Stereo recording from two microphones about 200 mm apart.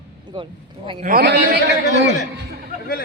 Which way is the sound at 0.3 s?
25° right (ahead or behind).